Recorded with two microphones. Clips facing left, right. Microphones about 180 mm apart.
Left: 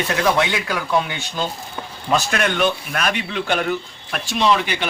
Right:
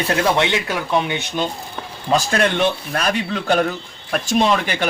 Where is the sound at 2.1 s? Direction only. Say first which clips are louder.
Right 2 dB; 30° right (ahead or behind).